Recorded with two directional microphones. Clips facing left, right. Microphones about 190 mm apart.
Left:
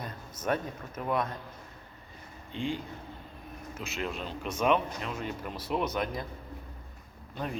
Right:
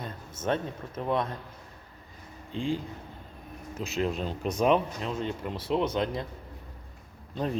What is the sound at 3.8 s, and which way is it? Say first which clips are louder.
Speech: right 6 dB; 35° right (ahead or behind).